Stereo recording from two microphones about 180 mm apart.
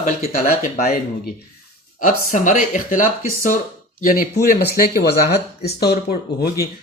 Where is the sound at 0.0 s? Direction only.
40° left (ahead or behind).